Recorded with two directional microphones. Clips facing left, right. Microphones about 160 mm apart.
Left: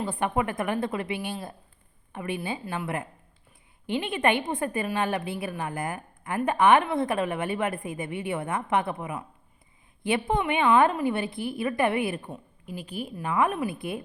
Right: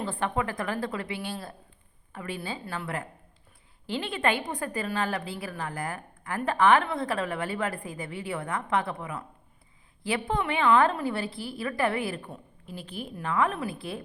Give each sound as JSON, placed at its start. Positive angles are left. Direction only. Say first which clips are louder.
{"t": 0.0, "sound": "a woman's voice", "louder": "left 2 dB", "side_deg": 15}